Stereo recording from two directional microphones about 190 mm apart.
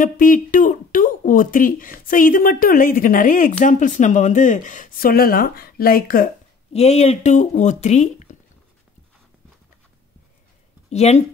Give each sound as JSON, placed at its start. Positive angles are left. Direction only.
{"t": 0.0, "sound": "speech", "side_deg": 45}
{"t": 6.7, "sound": "speech", "side_deg": 35}
{"t": 10.9, "sound": "speech", "side_deg": 35}